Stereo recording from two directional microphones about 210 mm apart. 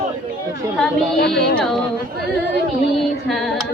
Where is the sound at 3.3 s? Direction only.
Centre (ahead or behind).